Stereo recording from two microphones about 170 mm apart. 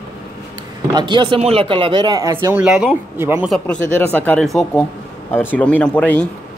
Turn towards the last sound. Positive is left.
turn(degrees=10)  # may be behind; listen again after turning